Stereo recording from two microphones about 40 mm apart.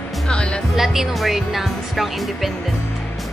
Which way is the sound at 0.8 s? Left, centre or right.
Centre.